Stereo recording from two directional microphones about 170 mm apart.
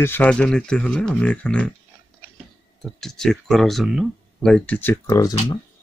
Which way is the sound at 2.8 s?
Centre (ahead or behind).